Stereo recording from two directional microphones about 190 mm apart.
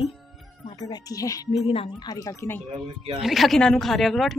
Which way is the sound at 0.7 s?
20° left (ahead or behind).